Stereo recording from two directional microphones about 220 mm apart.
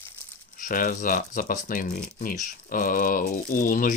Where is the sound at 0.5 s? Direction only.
40° left (ahead or behind).